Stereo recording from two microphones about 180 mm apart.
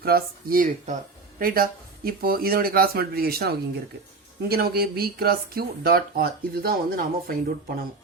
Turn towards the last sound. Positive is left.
turn(degrees=-55)  # may be behind; listen again after turning